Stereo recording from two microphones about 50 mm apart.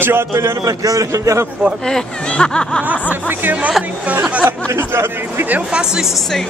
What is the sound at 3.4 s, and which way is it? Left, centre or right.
Speech, right.